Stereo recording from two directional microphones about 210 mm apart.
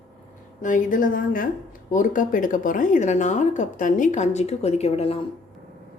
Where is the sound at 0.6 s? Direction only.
40° left (ahead or behind).